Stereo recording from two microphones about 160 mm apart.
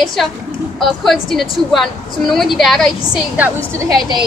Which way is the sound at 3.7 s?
20° right (ahead or behind).